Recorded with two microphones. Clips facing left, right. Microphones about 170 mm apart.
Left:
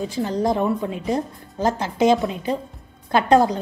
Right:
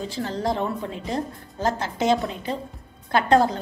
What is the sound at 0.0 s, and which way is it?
A woman's voice, 15° left (ahead or behind).